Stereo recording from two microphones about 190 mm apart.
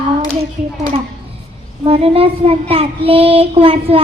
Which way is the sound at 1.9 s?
30° right (ahead or behind).